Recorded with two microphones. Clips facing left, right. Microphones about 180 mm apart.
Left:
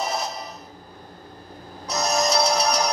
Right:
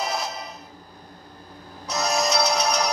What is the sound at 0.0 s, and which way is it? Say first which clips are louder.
Music: left 1 dB; centre (ahead or behind).